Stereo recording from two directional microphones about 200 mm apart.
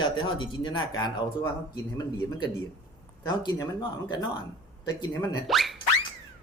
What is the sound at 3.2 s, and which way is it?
Speech, 20° left (ahead or behind).